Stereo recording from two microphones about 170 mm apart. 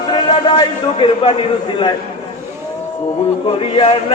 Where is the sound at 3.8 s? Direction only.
30° left (ahead or behind).